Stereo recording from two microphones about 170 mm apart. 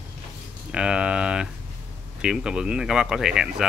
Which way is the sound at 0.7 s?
5° right (ahead or behind).